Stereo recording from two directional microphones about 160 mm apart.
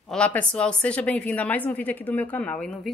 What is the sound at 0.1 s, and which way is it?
A woman's voice, 10° left (ahead or behind).